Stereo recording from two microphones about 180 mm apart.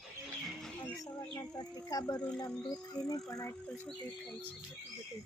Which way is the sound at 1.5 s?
20° left (ahead or behind).